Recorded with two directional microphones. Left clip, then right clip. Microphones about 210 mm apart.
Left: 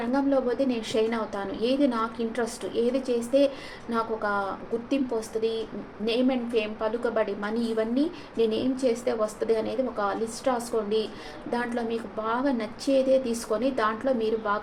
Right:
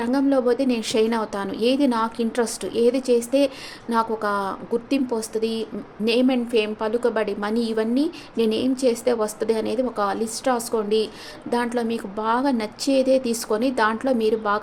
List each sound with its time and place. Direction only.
0.0 s a woman's voice: 50° right (ahead or behind)